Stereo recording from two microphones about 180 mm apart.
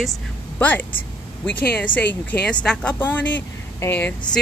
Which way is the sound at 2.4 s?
5° left (ahead or behind).